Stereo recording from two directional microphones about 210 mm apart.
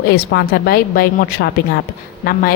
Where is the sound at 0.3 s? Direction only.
45° left (ahead or behind).